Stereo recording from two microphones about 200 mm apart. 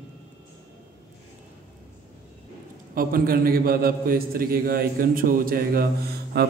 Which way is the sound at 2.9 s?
45° right (ahead or behind).